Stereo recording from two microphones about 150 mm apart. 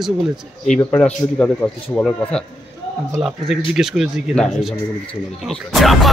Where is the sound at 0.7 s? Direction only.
10° left (ahead or behind).